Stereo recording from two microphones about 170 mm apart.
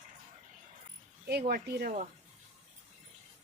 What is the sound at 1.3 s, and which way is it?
Speech, 65° right (ahead or behind).